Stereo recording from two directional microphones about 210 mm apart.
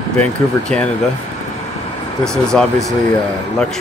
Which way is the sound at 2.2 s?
5° left (ahead or behind).